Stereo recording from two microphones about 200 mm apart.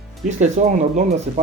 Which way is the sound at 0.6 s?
40° right (ahead or behind).